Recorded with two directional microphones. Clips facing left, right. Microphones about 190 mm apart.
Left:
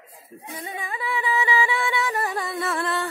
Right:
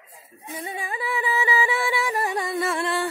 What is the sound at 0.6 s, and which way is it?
Music, 30° right (ahead or behind).